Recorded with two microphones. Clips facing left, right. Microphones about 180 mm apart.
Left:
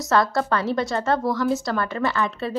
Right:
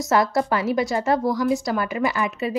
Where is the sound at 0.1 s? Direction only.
20° right (ahead or behind).